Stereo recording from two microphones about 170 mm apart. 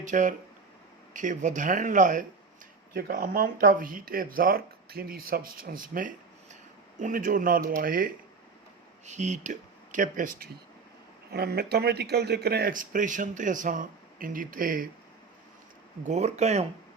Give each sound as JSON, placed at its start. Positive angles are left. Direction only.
{"t": 0.0, "sound": "speech", "side_deg": -50}
{"t": 9.0, "sound": "speech", "side_deg": -45}
{"t": 11.3, "sound": "speech", "side_deg": -70}
{"t": 16.0, "sound": "speech", "side_deg": -40}